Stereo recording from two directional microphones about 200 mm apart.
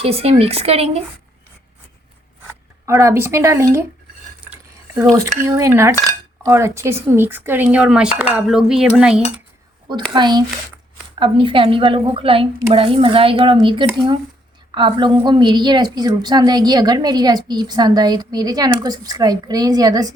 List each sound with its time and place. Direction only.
0.0 s speech: 30° right (ahead or behind)
2.8 s speech: 15° right (ahead or behind)
5.4 s speech: 15° right (ahead or behind)
9.0 s cutlery: 5° right (ahead or behind)
10.1 s a woman's voice: 20° right (ahead or behind)